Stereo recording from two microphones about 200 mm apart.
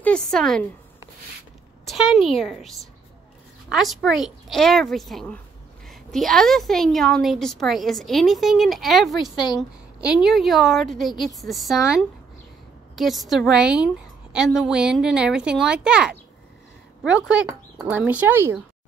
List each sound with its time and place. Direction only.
0.0 s a woman's voice: 5° left (ahead or behind)
1.9 s a woman's voice: centre (ahead or behind)
9.3 s a woman's voice: 20° left (ahead or behind)
9.6 s a woman's voice: 5° right (ahead or behind)